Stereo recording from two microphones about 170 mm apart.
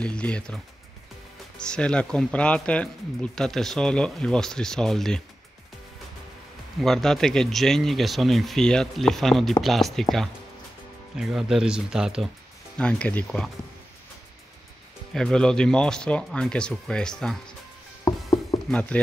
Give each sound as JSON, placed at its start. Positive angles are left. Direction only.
{"t": 0.0, "sound": "speech", "side_deg": 5}
{"t": 1.6, "sound": "speech", "side_deg": 5}
{"t": 6.8, "sound": "speech", "side_deg": 0}
{"t": 11.1, "sound": "speech", "side_deg": -5}
{"t": 12.7, "sound": "speech", "side_deg": 5}
{"t": 15.1, "sound": "speech", "side_deg": 5}
{"t": 18.0, "sound": "a sound", "side_deg": 20}
{"t": 18.7, "sound": "speech", "side_deg": 5}